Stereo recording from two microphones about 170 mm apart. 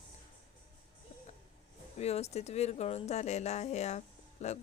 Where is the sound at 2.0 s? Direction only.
40° left (ahead or behind).